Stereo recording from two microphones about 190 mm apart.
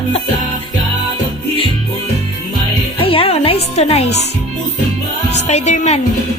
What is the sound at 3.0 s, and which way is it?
Music, 30° left (ahead or behind).